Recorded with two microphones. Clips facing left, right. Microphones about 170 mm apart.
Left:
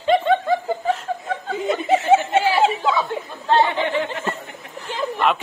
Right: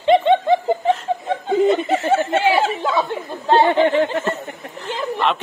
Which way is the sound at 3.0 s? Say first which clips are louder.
Right 2 dB; 30° right (ahead or behind).